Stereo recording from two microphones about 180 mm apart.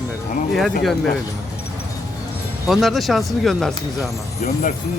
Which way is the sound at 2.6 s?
Centre (ahead or behind).